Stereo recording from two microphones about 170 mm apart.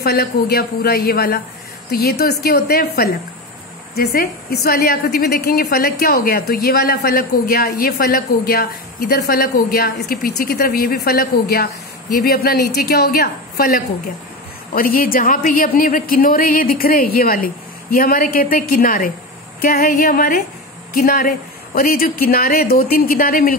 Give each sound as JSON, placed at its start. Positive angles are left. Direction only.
{"t": 0.0, "sound": "a woman's voice", "side_deg": 65}